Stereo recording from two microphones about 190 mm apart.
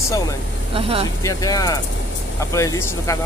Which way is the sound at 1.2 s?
15° left (ahead or behind).